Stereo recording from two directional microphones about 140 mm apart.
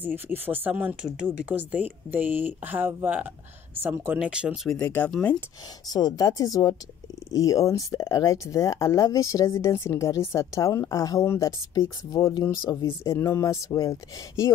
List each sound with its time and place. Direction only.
0.0 s speech: 15° right (ahead or behind)
4.7 s speech: 10° left (ahead or behind)
5.9 s speech: 25° left (ahead or behind)